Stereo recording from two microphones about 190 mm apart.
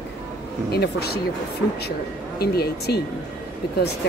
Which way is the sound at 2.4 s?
55° left (ahead or behind).